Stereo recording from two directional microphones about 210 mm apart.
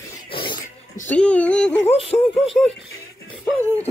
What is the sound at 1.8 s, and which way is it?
Speech, 30° left (ahead or behind).